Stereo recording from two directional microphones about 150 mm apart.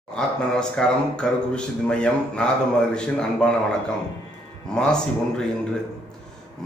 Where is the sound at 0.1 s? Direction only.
5° left (ahead or behind).